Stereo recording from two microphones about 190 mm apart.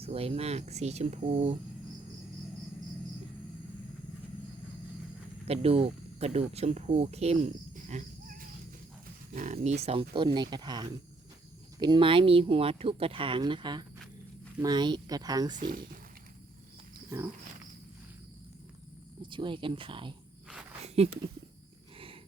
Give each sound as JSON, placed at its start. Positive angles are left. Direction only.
{"t": 0.0, "sound": "speech", "side_deg": -30}
{"t": 5.5, "sound": "speech", "side_deg": -30}
{"t": 15.5, "sound": "speech", "side_deg": -45}
{"t": 19.2, "sound": "speech", "side_deg": -25}
{"t": 21.9, "sound": "wild animals", "side_deg": -30}